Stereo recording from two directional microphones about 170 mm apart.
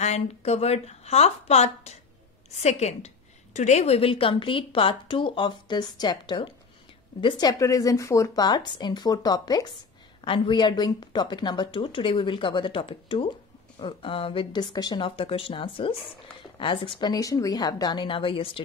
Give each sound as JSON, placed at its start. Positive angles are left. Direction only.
{"t": 0.0, "sound": "speech", "side_deg": 40}